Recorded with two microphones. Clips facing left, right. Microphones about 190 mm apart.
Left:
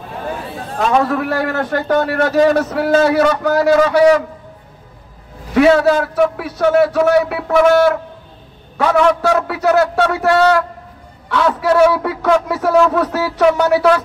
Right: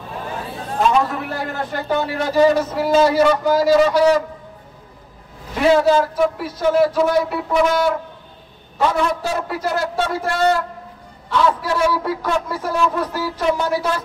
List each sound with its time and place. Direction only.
0.7 s a man's voice: 90° left
2.0 s a man's voice: 60° left (ahead or behind)
5.5 s a man's voice: 65° left (ahead or behind)